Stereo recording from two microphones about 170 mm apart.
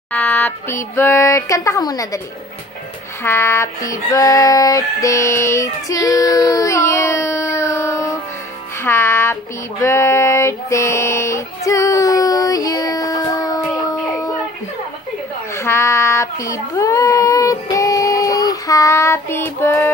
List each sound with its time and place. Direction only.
0.1 s a sound: 10° left (ahead or behind)
3.3 s female singing: 15° left (ahead or behind)
8.8 s child singing: 15° left (ahead or behind)
15.5 s child singing: 15° left (ahead or behind)